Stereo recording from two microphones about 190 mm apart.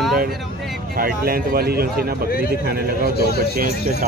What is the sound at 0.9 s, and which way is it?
A man's voice, 50° right (ahead or behind).